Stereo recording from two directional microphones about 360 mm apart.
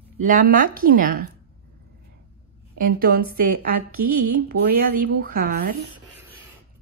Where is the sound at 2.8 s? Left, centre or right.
Right.